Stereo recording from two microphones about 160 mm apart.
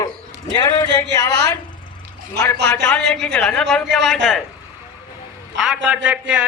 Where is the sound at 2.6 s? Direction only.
90° right.